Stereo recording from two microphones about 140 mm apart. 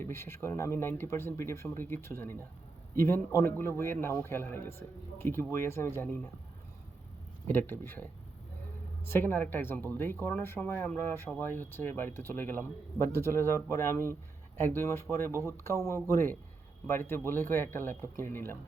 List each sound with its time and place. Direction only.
0.0 s speech: 15° left (ahead or behind)
7.4 s speech: 15° left (ahead or behind)
9.0 s speech: 15° left (ahead or behind)